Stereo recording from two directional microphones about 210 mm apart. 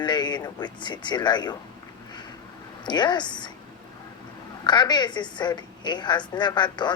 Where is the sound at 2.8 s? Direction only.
20° left (ahead or behind).